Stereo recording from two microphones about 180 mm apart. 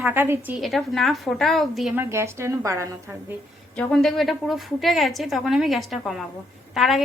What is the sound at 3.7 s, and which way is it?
A woman's voice, 5° left (ahead or behind).